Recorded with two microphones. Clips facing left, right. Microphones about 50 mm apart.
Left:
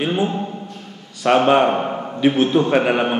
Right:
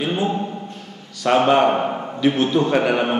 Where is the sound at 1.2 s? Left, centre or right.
Centre.